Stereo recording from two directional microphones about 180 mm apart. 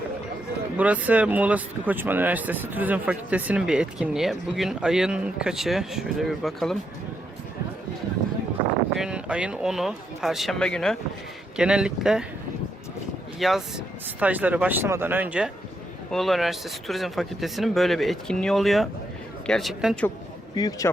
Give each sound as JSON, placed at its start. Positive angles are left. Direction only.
{"t": 0.8, "sound": "speech", "side_deg": -10}
{"t": 9.0, "sound": "speech", "side_deg": -5}
{"t": 13.4, "sound": "speech", "side_deg": -5}
{"t": 20.6, "sound": "a man's voice", "side_deg": 20}